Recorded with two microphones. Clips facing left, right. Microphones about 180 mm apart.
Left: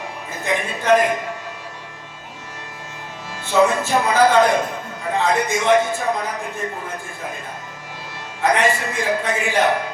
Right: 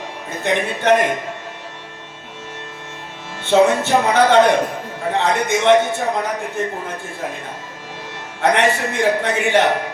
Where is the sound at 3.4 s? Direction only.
65° right (ahead or behind).